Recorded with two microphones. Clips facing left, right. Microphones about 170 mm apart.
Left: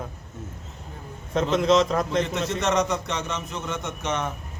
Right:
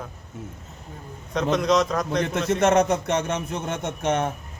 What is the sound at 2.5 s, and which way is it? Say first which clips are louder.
A man's voice: right 5 dB; 50° right (ahead or behind).